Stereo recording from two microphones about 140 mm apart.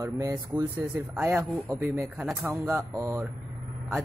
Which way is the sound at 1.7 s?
25° right (ahead or behind).